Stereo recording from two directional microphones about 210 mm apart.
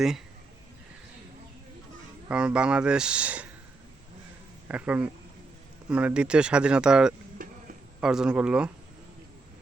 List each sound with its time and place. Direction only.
2.3 s speech: 5° right (ahead or behind)
4.7 s speech: 5° right (ahead or behind)
7.4 s a sound: 40° right (ahead or behind)
8.0 s speech: 5° right (ahead or behind)